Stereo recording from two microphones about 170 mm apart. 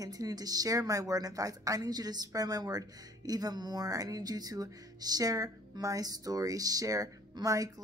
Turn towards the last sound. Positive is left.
turn(degrees=-20)  # may be behind; listen again after turning